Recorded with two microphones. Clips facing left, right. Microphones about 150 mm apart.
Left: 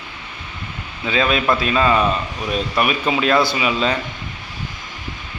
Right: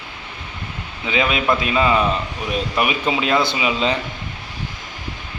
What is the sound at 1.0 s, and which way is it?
A man's voice, 15° right (ahead or behind).